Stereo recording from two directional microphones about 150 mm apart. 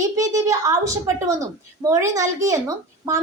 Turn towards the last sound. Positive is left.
turn(degrees=-25)  # may be behind; listen again after turning